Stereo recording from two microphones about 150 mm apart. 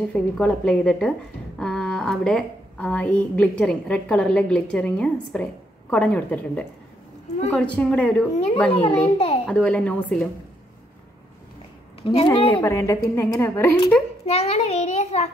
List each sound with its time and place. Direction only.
0.1 s a woman's voice: 5° left (ahead or behind)
9.0 s a woman's voice: 40° left (ahead or behind)
9.5 s a woman's voice: 5° left (ahead or behind)
12.0 s a woman's voice: 35° left (ahead or behind)
12.6 s a woman's voice: 15° left (ahead or behind)
14.2 s a child's voice: 40° left (ahead or behind)